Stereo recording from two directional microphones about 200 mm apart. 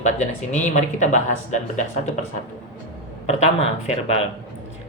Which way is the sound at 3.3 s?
35° left (ahead or behind).